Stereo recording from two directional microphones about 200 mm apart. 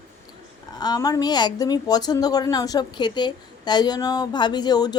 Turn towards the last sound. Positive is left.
turn(degrees=20)  # may be behind; listen again after turning